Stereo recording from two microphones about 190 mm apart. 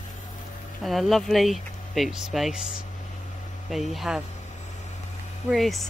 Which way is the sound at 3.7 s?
Centre (ahead or behind).